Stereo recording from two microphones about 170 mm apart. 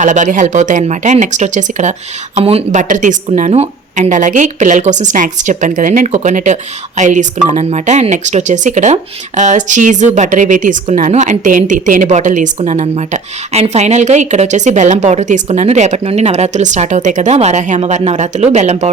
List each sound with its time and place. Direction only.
0.0 s speech: 45° right (ahead or behind)